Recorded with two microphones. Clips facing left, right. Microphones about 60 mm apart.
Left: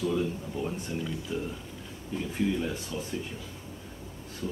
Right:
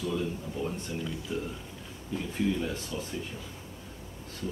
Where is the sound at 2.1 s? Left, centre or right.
Centre.